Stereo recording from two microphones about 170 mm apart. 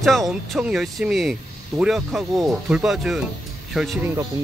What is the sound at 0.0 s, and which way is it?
Speech, centre (ahead or behind).